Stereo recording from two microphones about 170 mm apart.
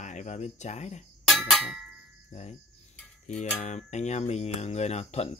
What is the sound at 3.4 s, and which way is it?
Speech, 45° left (ahead or behind).